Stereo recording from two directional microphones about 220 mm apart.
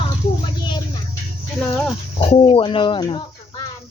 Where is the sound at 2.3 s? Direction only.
25° left (ahead or behind).